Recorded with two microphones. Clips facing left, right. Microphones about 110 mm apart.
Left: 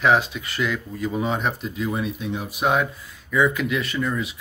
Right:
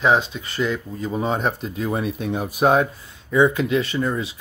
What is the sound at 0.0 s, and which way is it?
Speech, 25° right (ahead or behind).